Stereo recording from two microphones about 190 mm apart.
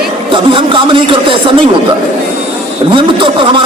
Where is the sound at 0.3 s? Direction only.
25° right (ahead or behind).